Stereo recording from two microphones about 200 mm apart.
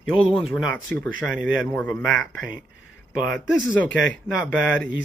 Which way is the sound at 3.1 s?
5° right (ahead or behind).